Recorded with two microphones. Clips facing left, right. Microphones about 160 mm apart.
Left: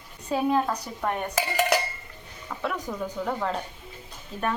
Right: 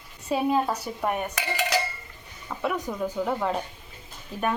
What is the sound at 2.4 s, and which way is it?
Dishes, 5° right (ahead or behind).